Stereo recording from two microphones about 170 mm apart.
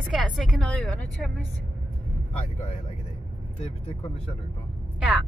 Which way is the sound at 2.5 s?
45° left (ahead or behind).